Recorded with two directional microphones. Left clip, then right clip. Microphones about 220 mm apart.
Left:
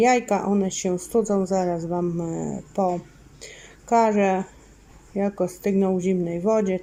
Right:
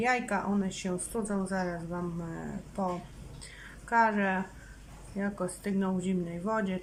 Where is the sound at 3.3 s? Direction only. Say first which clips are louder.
Left 6 dB; 20° left (ahead or behind).